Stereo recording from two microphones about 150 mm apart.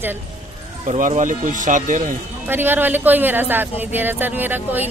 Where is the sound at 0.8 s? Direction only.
55° right (ahead or behind).